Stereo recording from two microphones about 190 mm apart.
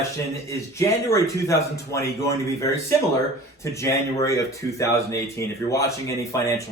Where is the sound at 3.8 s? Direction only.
15° left (ahead or behind).